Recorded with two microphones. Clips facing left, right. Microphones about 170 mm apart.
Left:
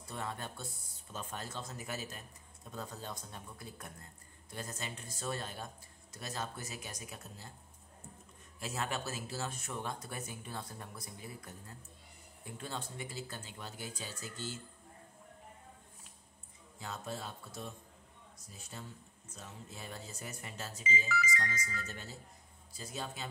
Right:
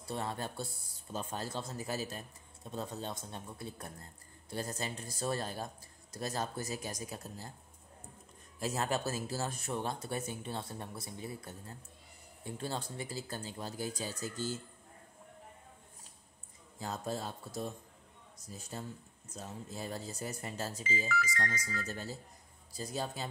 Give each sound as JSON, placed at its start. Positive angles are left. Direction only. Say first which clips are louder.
{"t": 0.1, "sound": "a man's voice", "louder": "right 4 dB", "side_deg": -30}
{"t": 8.5, "sound": "a man's voice", "louder": "right 5 dB", "side_deg": -40}
{"t": 16.7, "sound": "a man's voice", "louder": "right 4 dB", "side_deg": -40}
{"t": 21.1, "sound": "speech", "louder": "right 1 dB", "side_deg": 0}
{"t": 21.8, "sound": "a man's voice", "louder": "right 6 dB", "side_deg": -40}